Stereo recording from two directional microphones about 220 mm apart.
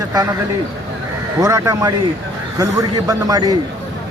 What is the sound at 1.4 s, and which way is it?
Speech, 15° right (ahead or behind).